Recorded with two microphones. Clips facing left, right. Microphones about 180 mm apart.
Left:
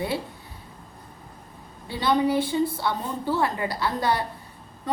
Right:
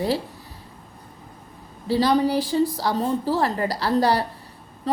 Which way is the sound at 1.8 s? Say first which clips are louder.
Right 3 dB; 35° right (ahead or behind).